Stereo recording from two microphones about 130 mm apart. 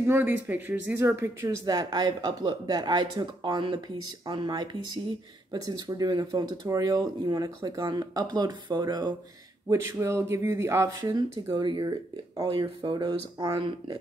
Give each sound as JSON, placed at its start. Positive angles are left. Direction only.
{"t": 0.0, "sound": "speech", "side_deg": -15}